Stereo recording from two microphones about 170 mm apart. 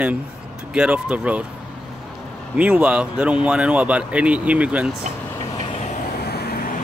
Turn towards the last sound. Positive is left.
turn(degrees=65)  # may be behind; listen again after turning